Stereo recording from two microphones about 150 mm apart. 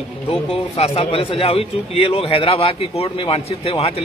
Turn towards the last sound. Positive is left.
turn(degrees=40)  # may be behind; listen again after turning